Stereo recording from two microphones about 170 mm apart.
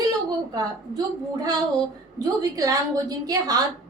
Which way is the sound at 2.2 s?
20° right (ahead or behind).